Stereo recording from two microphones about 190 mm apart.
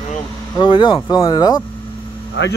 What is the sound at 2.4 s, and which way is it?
Speech, 70° left (ahead or behind).